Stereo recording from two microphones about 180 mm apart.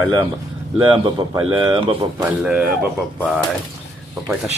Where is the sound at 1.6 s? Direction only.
30° right (ahead or behind).